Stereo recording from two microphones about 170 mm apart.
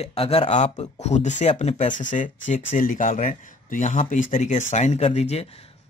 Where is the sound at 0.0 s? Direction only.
35° left (ahead or behind).